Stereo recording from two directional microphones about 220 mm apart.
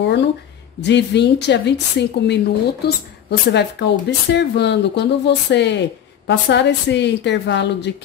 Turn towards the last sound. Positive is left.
turn(degrees=50)  # may be behind; listen again after turning